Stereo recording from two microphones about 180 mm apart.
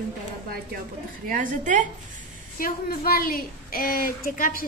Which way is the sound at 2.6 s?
55° left (ahead or behind).